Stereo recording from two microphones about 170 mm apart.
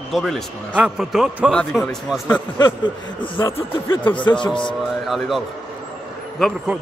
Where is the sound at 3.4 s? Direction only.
15° left (ahead or behind).